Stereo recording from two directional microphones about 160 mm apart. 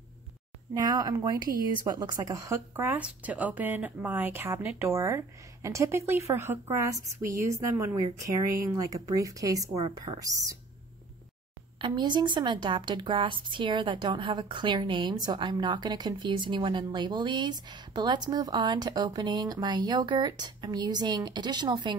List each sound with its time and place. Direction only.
0.7 s a woman's voice: 25° right (ahead or behind)
11.8 s a woman's voice: 30° right (ahead or behind)